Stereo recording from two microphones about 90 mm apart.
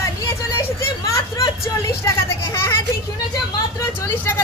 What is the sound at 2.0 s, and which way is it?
Vehicle, 30° left (ahead or behind).